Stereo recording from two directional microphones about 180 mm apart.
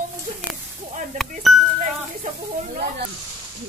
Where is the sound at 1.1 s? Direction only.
45° right (ahead or behind).